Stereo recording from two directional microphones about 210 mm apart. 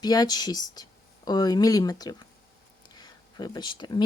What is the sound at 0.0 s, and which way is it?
Speech, 20° left (ahead or behind).